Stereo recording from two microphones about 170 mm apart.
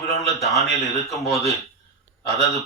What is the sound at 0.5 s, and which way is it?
Speech, centre (ahead or behind).